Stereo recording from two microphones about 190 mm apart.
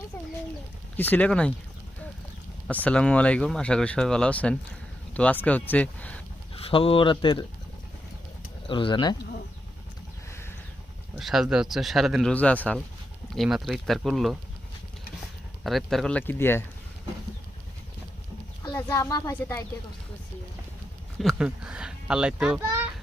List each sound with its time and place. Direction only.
0.9 s speech: 10° left (ahead or behind)
2.6 s speech: 10° left (ahead or behind)
6.5 s speech: 30° left (ahead or behind)
8.6 s speech: 25° left (ahead or behind)
11.2 s speech: centre (ahead or behind)
15.6 s speech: centre (ahead or behind)
18.7 s speech: 15° left (ahead or behind)
21.2 s speech: centre (ahead or behind)